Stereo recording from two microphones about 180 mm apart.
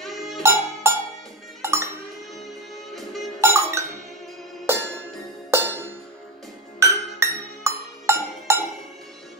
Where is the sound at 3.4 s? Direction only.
15° right (ahead or behind).